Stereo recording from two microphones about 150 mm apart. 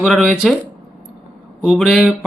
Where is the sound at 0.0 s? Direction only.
Centre (ahead or behind).